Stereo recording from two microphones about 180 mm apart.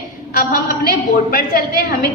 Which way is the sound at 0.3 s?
55° left (ahead or behind).